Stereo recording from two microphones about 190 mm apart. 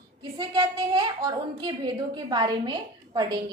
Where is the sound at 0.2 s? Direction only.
20° right (ahead or behind).